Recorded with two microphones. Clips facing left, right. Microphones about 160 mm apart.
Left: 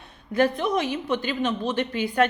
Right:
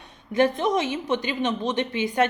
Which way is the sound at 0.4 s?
20° right (ahead or behind).